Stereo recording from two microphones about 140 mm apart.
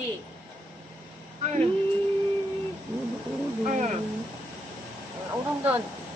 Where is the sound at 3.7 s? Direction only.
60° right (ahead or behind).